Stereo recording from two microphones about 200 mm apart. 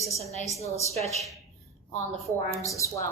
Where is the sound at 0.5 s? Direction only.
15° left (ahead or behind).